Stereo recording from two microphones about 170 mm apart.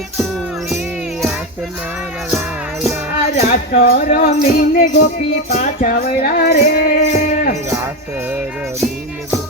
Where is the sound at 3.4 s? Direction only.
50° left (ahead or behind).